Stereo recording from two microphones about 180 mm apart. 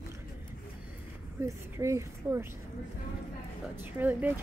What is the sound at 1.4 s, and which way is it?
Speech, 15° right (ahead or behind).